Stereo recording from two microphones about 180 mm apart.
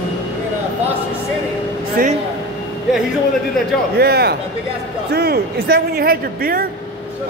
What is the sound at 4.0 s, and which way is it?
A man's voice, 60° right (ahead or behind).